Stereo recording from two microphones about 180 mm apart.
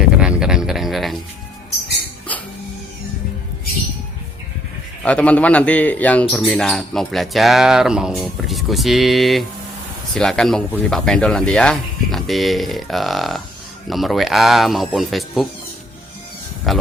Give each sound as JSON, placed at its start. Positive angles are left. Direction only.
{"t": 0.1, "sound": "music", "side_deg": -5}
{"t": 5.0, "sound": "speech", "side_deg": 5}
{"t": 16.7, "sound": "speech", "side_deg": 0}